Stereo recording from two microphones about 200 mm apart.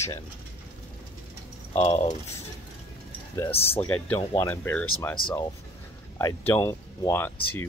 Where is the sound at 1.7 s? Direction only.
30° left (ahead or behind).